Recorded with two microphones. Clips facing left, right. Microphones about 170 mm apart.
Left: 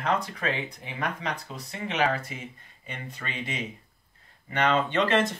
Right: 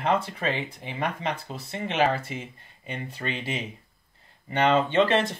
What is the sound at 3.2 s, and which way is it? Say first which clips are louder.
Speech: right 7 dB; 25° right (ahead or behind).